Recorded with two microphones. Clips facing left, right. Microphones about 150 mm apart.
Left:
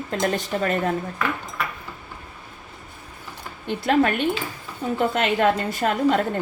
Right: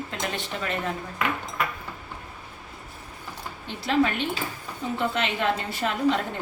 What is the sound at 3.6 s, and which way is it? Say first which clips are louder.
A woman's voice: left 4 dB; 55° left (ahead or behind).